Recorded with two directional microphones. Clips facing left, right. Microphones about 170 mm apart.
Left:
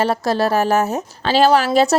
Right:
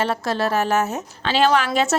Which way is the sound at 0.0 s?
35° left (ahead or behind).